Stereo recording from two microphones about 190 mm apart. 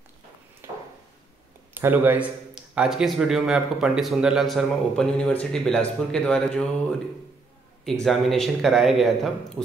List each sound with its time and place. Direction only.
0.6 s a sound: 15° right (ahead or behind)
1.7 s speech: 10° right (ahead or behind)
7.8 s speech: centre (ahead or behind)